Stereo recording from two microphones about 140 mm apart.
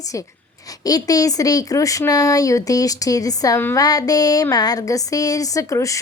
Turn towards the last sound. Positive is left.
turn(degrees=25)  # may be behind; listen again after turning